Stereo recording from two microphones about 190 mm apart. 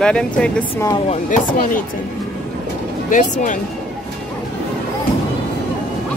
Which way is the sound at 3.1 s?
40° left (ahead or behind).